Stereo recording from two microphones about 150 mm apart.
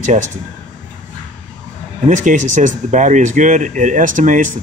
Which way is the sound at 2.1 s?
55° right (ahead or behind).